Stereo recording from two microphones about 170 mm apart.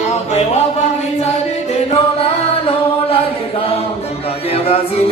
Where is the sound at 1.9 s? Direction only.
35° left (ahead or behind).